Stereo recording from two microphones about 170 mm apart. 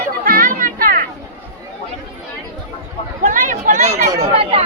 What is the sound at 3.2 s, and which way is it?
Speech, 50° right (ahead or behind).